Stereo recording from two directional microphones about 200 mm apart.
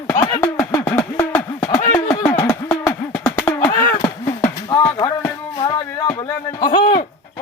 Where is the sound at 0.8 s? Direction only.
10° left (ahead or behind).